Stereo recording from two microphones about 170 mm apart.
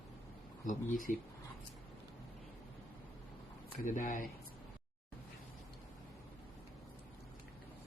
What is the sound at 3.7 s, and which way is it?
Speech, 50° left (ahead or behind).